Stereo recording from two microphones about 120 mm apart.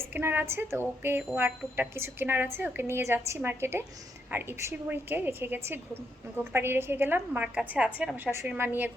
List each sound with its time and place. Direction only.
0.1 s a woman's voice: 15° right (ahead or behind)